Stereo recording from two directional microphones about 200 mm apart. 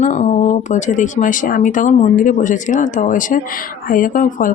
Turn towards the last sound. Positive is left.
turn(degrees=40)  # may be behind; listen again after turning